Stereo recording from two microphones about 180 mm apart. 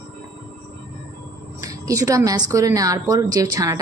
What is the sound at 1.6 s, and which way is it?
A woman's voice, 20° right (ahead or behind).